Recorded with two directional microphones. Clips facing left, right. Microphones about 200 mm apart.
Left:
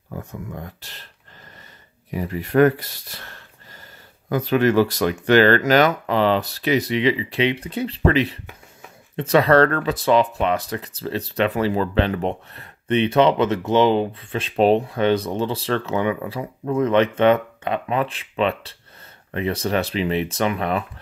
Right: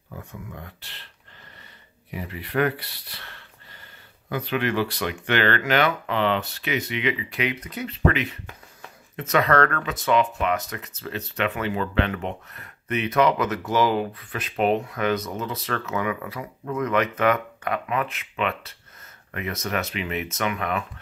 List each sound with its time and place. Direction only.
0.2 s speech: 45° left (ahead or behind)
2.0 s speech: 45° left (ahead or behind)